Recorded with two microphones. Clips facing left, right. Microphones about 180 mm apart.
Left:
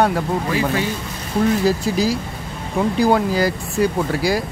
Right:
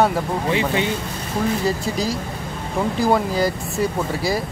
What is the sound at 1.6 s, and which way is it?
Speech, centre (ahead or behind).